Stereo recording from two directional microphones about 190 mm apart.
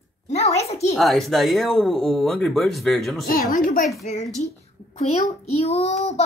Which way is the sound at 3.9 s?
Centre (ahead or behind).